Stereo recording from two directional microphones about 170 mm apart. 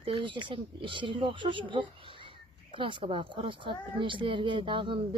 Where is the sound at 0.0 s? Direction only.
30° right (ahead or behind).